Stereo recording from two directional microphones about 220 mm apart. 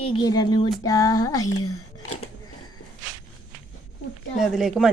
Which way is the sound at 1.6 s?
90° left.